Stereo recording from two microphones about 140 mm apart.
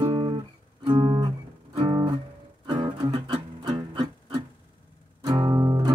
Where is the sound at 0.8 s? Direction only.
35° right (ahead or behind).